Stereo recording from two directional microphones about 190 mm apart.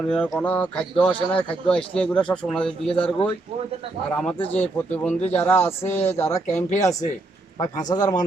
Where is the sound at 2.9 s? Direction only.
25° left (ahead or behind).